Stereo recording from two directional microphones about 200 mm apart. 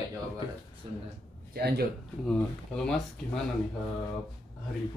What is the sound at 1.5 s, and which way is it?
Speech, 50° right (ahead or behind).